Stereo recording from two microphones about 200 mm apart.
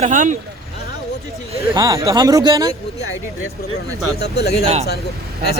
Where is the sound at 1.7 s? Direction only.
20° right (ahead or behind).